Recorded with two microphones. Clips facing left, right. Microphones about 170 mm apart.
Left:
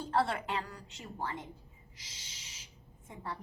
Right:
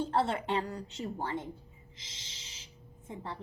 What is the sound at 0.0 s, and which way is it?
A woman's voice, 25° right (ahead or behind).